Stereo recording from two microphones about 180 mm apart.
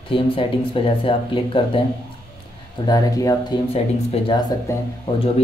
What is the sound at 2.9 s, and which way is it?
Speech, 20° left (ahead or behind).